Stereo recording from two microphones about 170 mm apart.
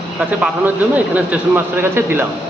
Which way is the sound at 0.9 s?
10° right (ahead or behind).